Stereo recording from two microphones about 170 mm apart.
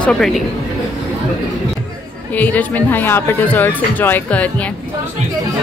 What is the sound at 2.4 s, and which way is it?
A woman's voice, 10° left (ahead or behind).